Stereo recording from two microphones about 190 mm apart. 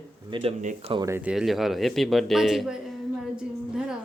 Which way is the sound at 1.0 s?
10° right (ahead or behind).